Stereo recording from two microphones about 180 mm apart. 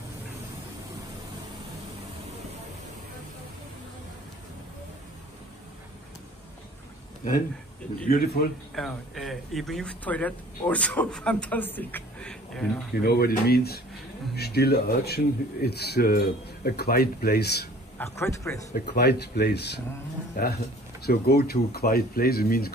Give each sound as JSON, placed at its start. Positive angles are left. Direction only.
{"t": 8.0, "sound": "speech", "side_deg": 55}
{"t": 8.7, "sound": "speech", "side_deg": 0}
{"t": 13.0, "sound": "speech", "side_deg": 60}
{"t": 17.9, "sound": "a man's voice", "side_deg": 15}
{"t": 18.8, "sound": "speech", "side_deg": 65}